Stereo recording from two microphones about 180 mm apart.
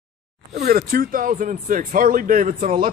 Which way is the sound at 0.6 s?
55° right (ahead or behind).